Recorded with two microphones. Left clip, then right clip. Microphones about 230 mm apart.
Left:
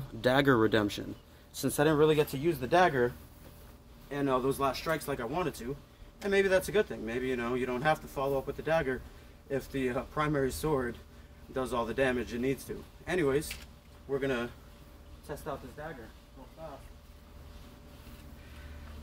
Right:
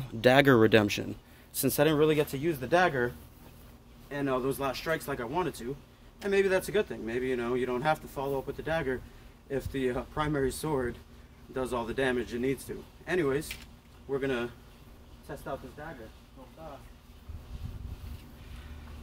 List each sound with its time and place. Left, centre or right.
0.2 s speech: right
1.8 s speech: right
4.1 s a man's voice: centre